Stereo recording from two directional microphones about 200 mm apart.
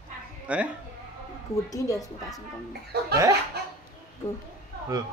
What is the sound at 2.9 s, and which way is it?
Chuckle, 55° right (ahead or behind).